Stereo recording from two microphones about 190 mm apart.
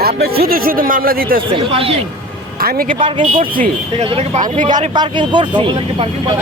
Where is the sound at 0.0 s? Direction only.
55° right (ahead or behind).